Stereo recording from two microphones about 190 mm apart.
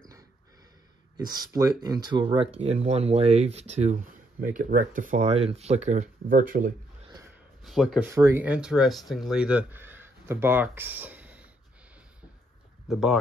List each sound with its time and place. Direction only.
1.1 s speech: 20° right (ahead or behind); by 6.7 s 45° right (ahead or behind)
7.6 s speech: centre (ahead or behind)
8.1 s speech: 15° right (ahead or behind)
12.8 s speech: centre (ahead or behind)